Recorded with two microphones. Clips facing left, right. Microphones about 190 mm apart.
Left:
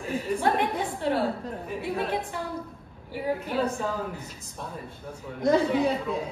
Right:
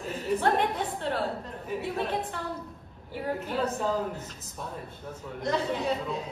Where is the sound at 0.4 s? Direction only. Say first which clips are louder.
Left 1 dB; 10° left (ahead or behind).